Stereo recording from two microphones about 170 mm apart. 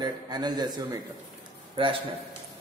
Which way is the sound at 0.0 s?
25° right (ahead or behind).